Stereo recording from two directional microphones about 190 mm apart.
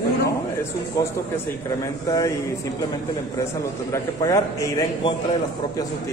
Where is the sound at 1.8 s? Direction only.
15° left (ahead or behind).